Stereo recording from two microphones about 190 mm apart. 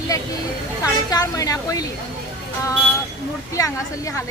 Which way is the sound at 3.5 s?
15° left (ahead or behind).